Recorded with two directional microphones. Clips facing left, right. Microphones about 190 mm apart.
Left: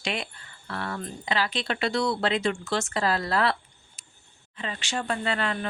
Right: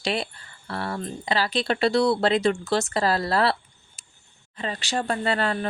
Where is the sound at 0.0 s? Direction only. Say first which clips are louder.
Right 5 dB; 35° right (ahead or behind).